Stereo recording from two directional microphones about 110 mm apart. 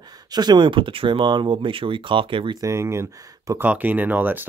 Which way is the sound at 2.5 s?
25° right (ahead or behind).